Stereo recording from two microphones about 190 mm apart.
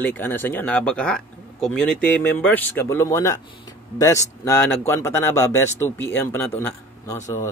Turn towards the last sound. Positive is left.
turn(degrees=15)  # may be behind; listen again after turning